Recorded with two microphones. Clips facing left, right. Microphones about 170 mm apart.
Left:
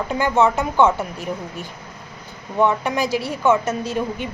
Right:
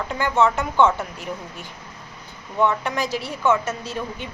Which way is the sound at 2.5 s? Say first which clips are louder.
Left 3 dB; 10° left (ahead or behind).